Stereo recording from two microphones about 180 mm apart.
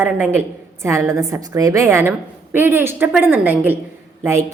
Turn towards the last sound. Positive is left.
turn(degrees=-15)  # may be behind; listen again after turning